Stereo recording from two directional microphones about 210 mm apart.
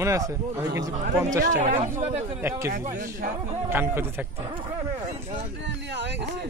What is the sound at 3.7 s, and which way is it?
Speech, 10° right (ahead or behind).